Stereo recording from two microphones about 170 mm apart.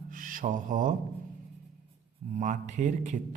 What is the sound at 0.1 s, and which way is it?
Mantra, 50° right (ahead or behind).